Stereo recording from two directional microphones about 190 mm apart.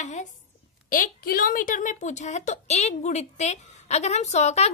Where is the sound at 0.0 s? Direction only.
40° left (ahead or behind).